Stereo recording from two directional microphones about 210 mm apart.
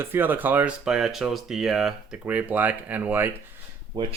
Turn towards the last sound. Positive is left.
turn(degrees=-20)  # may be behind; listen again after turning